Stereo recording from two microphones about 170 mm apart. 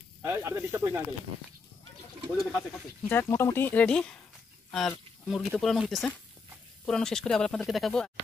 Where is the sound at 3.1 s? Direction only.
15° left (ahead or behind).